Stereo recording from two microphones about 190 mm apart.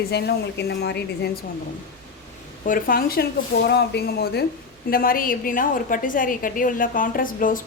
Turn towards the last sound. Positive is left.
turn(degrees=45)  # may be behind; listen again after turning